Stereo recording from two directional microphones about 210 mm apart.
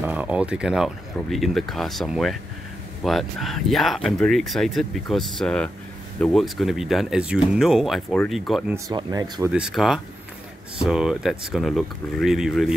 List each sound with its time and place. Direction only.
0.0 s speech: 5° right (ahead or behind)
8.7 s speech: 15° right (ahead or behind)
9.5 s speech: 5° right (ahead or behind)